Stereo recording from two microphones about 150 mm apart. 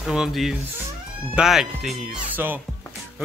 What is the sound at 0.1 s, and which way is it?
A man's voice, 5° right (ahead or behind).